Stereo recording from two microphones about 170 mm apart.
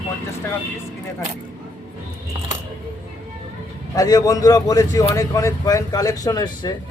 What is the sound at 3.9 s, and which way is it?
A man's voice, 20° left (ahead or behind).